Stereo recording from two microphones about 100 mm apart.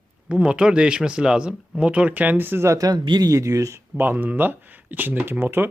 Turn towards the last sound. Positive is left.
turn(degrees=-20)  # may be behind; listen again after turning